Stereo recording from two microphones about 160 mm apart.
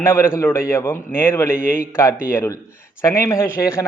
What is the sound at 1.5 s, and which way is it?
Speech, 65° left (ahead or behind).